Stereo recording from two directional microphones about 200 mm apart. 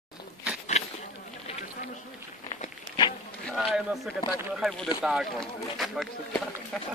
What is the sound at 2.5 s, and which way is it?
Walk, 25° left (ahead or behind).